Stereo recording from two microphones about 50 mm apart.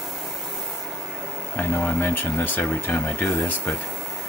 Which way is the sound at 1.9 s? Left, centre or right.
Left.